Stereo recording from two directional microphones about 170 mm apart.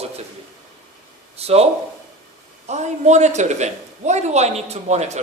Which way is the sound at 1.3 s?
35° right (ahead or behind).